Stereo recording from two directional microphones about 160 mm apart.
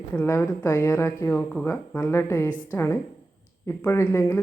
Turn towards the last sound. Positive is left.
turn(degrees=15)  # may be behind; listen again after turning